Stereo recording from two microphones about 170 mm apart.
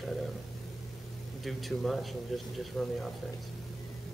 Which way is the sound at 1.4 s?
Centre (ahead or behind).